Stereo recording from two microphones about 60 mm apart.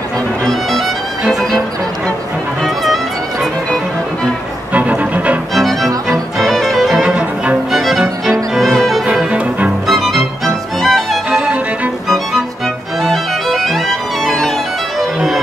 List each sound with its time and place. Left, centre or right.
0.5 s music: centre
2.6 s music: centre
4.7 s music: right
5.5 s music: centre
9.0 s music: centre
9.8 s music: centre
11.2 s music: centre
13.0 s violin: centre
15.0 s music: centre